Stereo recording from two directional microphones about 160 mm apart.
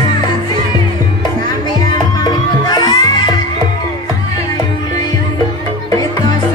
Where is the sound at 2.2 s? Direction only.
25° left (ahead or behind).